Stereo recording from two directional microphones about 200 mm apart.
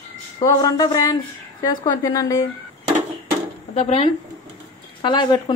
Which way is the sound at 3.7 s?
30° left (ahead or behind).